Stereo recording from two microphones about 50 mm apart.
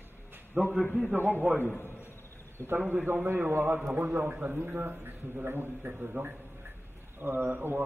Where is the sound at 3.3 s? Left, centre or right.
Right.